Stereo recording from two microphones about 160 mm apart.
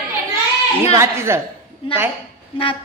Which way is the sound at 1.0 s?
15° right (ahead or behind).